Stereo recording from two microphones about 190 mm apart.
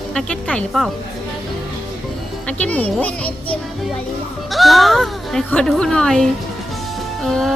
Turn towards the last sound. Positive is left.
turn(degrees=0)  # may be behind; listen again after turning